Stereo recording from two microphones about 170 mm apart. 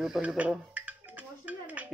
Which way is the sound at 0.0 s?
5° right (ahead or behind).